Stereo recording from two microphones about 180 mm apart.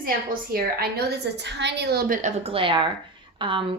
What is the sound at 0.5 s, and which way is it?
A woman's voice, 60° right (ahead or behind).